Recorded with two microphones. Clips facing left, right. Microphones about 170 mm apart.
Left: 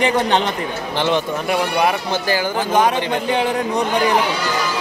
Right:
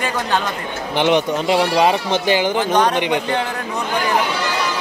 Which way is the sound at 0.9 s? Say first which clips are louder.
Right 4 dB; 20° right (ahead or behind).